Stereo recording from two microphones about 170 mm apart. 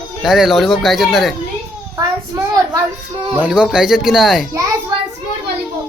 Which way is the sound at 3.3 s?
5° right (ahead or behind).